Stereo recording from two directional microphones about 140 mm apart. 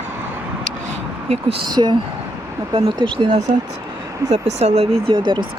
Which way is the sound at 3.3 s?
55° right (ahead or behind).